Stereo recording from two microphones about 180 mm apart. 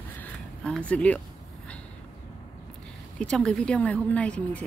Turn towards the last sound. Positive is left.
turn(degrees=5)  # may be behind; listen again after turning